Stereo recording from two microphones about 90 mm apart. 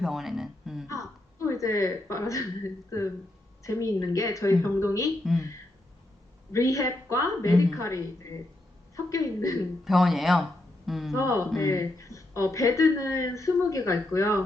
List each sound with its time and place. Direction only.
0.0 s a sound: 5° right (ahead or behind)
0.9 s a woman's voice: 35° left (ahead or behind)
6.5 s speech: 35° left (ahead or behind)
9.8 s speech: centre (ahead or behind)
11.1 s speech: 35° left (ahead or behind)